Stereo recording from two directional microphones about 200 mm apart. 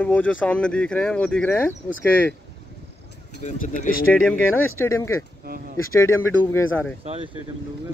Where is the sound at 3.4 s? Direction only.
40° left (ahead or behind).